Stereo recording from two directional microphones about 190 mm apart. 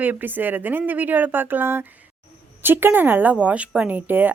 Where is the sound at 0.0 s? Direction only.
10° right (ahead or behind).